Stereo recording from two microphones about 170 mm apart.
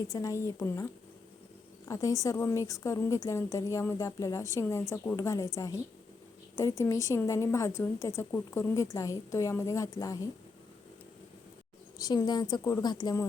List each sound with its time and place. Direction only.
0.1 s a woman's voice: 20° left (ahead or behind)
1.9 s a woman's voice: 20° left (ahead or behind)
11.9 s a woman's voice: 25° left (ahead or behind)